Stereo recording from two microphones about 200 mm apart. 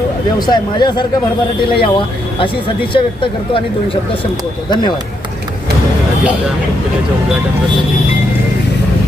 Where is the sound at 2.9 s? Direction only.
25° left (ahead or behind).